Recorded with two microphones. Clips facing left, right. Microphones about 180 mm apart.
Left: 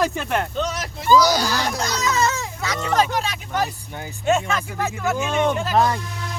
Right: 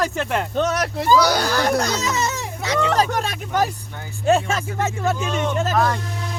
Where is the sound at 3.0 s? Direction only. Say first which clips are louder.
Even; 45° right (ahead or behind).